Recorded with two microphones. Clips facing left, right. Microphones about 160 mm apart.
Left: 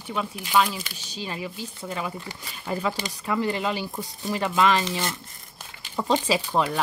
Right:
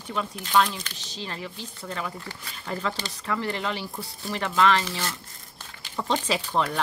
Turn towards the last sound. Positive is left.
turn(degrees=10)  # may be behind; listen again after turning